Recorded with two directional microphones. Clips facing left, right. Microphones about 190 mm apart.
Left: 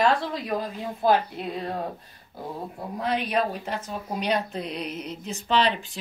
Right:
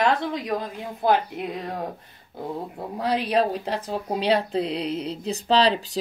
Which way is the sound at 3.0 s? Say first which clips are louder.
Right 3 dB; 30° right (ahead or behind).